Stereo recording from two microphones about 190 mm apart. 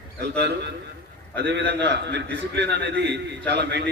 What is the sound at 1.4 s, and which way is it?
A man's voice, 65° right (ahead or behind).